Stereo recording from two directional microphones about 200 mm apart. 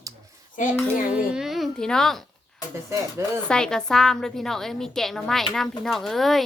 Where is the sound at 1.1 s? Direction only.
5° right (ahead or behind).